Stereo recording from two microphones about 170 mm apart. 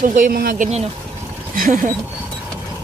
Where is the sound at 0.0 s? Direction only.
50° right (ahead or behind).